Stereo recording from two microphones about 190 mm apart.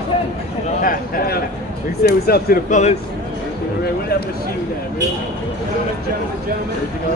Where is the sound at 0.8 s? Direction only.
50° left (ahead or behind).